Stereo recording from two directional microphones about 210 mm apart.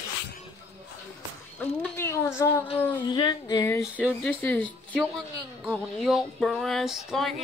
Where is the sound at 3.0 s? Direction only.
20° left (ahead or behind).